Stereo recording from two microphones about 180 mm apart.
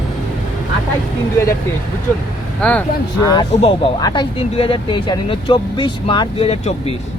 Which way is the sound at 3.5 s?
35° left (ahead or behind).